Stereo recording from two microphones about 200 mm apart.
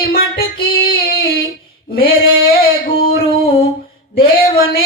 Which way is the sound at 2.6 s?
50° left (ahead or behind).